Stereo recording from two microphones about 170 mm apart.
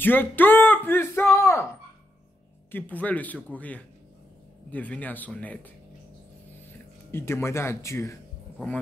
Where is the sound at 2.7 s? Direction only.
10° left (ahead or behind).